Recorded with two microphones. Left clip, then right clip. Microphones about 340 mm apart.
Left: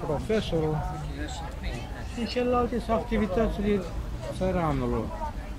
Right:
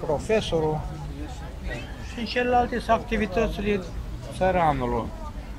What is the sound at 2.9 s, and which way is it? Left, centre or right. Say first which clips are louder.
Speech: right 4 dB; right.